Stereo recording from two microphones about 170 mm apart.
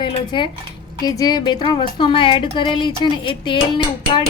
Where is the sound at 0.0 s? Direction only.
30° left (ahead or behind).